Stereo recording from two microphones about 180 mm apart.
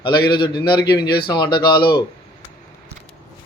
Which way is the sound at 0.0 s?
25° left (ahead or behind).